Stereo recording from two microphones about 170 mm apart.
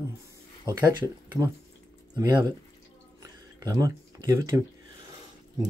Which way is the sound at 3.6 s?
20° right (ahead or behind).